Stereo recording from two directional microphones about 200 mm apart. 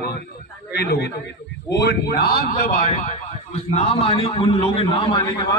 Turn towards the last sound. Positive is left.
turn(degrees=25)  # may be behind; listen again after turning